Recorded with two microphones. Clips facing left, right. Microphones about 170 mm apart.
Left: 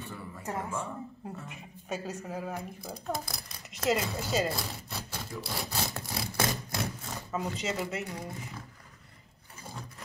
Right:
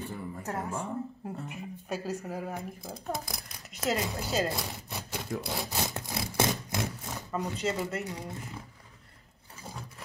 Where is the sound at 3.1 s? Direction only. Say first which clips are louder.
Even; 20° right (ahead or behind).